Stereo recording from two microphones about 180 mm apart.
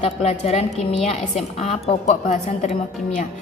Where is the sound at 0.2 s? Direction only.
35° left (ahead or behind).